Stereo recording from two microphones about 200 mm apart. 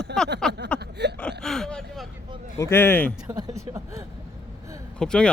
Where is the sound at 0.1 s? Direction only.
55° right (ahead or behind).